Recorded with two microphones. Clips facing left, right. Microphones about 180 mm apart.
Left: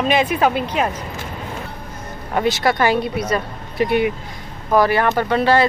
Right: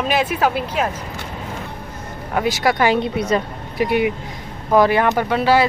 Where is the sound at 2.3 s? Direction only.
10° right (ahead or behind).